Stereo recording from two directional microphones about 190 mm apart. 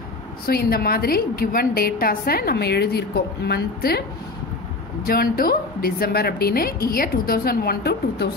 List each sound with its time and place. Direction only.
0.5 s a woman's voice: 55° left (ahead or behind)
5.0 s a woman's voice: 50° left (ahead or behind)